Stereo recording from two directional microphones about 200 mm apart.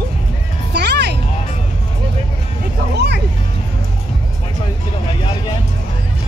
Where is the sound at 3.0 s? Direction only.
55° right (ahead or behind).